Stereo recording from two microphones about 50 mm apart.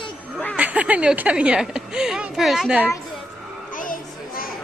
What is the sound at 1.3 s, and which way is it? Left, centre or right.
A woman's voice, centre.